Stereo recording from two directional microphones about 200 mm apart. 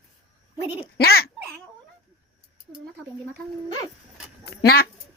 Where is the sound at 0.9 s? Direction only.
50° left (ahead or behind).